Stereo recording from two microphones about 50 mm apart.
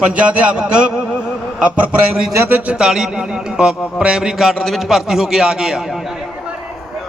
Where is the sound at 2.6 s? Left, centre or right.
Centre.